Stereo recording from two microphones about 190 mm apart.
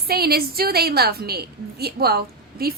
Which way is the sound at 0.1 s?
55° right (ahead or behind).